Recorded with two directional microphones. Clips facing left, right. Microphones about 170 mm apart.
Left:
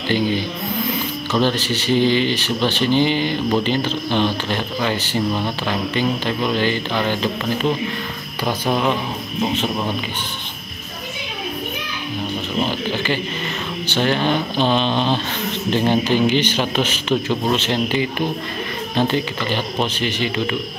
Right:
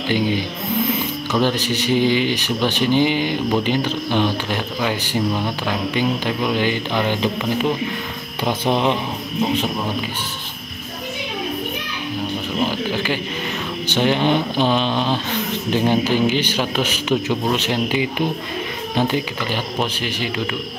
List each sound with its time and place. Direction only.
1.3 s speech: 15° right (ahead or behind)
12.5 s speech: 10° right (ahead or behind)